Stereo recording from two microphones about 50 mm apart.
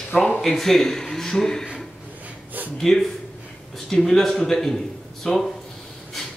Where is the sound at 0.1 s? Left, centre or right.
Left.